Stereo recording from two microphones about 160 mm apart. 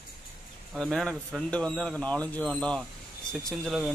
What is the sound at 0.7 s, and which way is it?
Speech, centre (ahead or behind).